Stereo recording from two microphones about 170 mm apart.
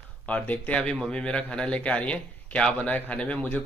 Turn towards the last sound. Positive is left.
turn(degrees=10)  # may be behind; listen again after turning